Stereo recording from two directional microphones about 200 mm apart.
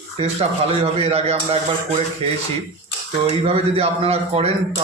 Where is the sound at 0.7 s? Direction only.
30° right (ahead or behind).